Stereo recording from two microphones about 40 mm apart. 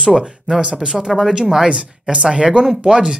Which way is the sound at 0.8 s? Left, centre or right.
Centre.